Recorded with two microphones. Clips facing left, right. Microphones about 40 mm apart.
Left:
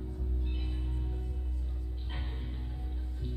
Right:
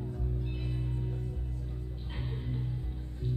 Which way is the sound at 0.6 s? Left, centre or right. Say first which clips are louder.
Right 5 dB; centre.